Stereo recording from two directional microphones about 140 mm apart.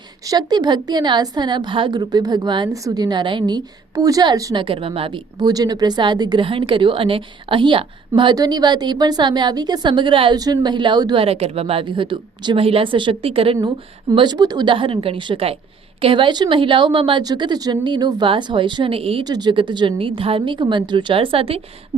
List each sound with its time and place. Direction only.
0.3 s a woman's voice: 30° right (ahead or behind)
4.6 s a woman's voice: 40° right (ahead or behind)
14.1 s a woman's voice: 30° right (ahead or behind)
19.2 s a woman's voice: 30° right (ahead or behind)